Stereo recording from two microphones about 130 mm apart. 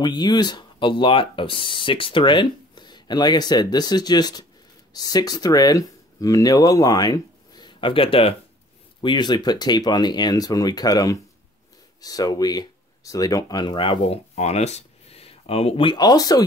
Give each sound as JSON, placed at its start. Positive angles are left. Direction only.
{"t": 0.0, "sound": "speech", "side_deg": 35}